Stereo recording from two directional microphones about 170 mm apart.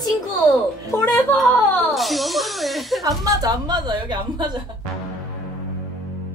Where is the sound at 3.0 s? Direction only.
20° right (ahead or behind).